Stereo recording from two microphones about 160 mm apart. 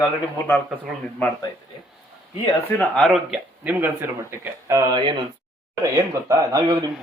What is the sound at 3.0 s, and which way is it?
Speech, centre (ahead or behind).